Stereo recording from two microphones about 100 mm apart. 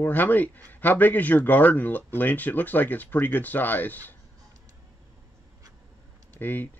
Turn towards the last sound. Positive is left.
turn(degrees=20)  # may be behind; listen again after turning